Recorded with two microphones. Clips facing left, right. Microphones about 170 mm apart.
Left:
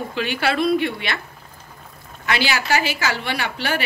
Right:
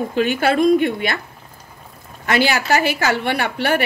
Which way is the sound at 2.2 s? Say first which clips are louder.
Right 4 dB; 50° right (ahead or behind).